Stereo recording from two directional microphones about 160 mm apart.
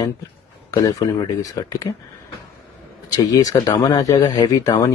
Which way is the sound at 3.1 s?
25° left (ahead or behind).